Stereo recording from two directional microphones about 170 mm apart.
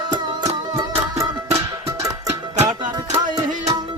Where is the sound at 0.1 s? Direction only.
25° right (ahead or behind).